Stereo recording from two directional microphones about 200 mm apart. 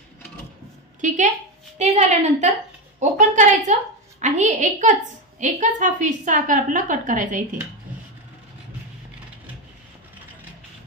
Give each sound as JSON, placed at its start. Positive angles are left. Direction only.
{"t": 1.0, "sound": "a woman's voice", "side_deg": -40}